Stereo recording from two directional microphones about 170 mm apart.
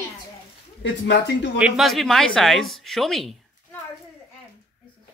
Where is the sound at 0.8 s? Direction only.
90° left.